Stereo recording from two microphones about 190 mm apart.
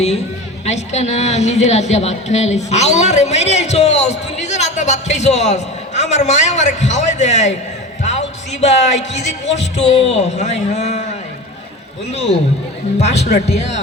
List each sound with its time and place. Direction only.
0.6 s a woman's voice: 35° left (ahead or behind)
8.6 s a woman's voice: 35° left (ahead or behind)
12.1 s a woman's voice: 35° left (ahead or behind)